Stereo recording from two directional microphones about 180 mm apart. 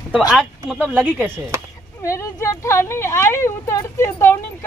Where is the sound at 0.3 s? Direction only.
5° right (ahead or behind).